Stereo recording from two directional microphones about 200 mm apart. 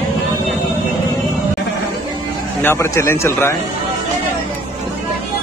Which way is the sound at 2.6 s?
15° left (ahead or behind).